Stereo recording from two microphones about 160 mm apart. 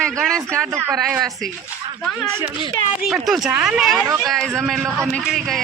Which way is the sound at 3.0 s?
Centre (ahead or behind).